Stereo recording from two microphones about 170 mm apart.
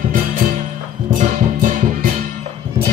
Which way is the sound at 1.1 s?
55° right (ahead or behind).